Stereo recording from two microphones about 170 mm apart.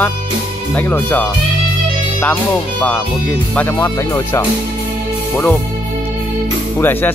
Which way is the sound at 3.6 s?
15° left (ahead or behind).